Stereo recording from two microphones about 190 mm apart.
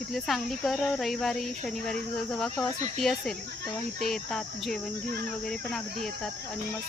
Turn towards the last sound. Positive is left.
turn(degrees=5)  # may be behind; listen again after turning